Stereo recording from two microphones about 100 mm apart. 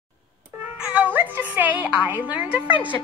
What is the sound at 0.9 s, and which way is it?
A woman's voice, 15° right (ahead or behind).